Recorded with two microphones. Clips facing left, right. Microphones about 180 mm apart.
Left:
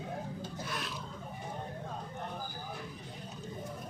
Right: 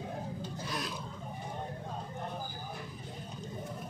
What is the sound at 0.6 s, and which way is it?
Filing, 35° right (ahead or behind).